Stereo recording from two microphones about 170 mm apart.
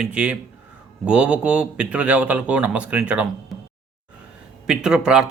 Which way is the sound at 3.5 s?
Centre (ahead or behind).